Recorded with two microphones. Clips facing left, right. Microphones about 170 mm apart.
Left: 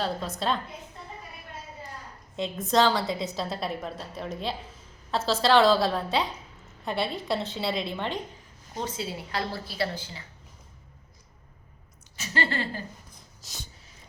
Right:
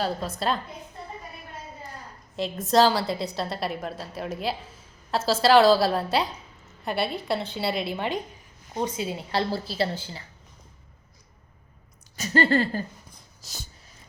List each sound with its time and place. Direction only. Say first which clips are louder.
0.0 s a woman's voice: right 2 dB; 5° right (ahead or behind)
2.3 s a woman's voice: right 3 dB; centre (ahead or behind); by 9.2 s 15° right (ahead or behind)
9.3 s a woman's voice: right 8 dB; 30° right (ahead or behind)
12.1 s speech: right 8 dB; 40° right (ahead or behind)
13.4 s a sound: right 1 dB; centre (ahead or behind)